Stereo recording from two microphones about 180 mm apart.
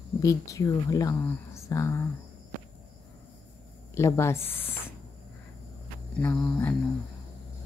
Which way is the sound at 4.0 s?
15° left (ahead or behind).